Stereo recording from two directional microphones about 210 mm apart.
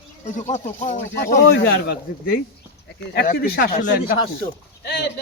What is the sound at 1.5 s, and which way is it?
Speech, 50° left (ahead or behind).